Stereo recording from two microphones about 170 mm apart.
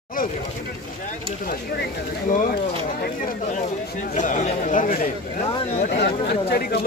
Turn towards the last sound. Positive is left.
turn(degrees=60)  # may be behind; listen again after turning